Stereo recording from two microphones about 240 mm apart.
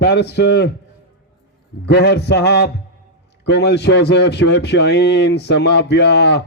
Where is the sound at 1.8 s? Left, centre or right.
Left.